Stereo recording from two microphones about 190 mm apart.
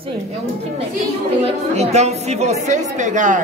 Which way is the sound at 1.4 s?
35° right (ahead or behind).